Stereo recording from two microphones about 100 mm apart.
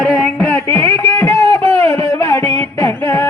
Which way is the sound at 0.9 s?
20° left (ahead or behind).